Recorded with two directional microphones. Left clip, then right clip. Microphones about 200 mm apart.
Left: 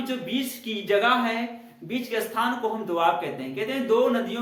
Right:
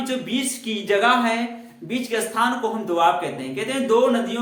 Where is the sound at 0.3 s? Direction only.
15° right (ahead or behind).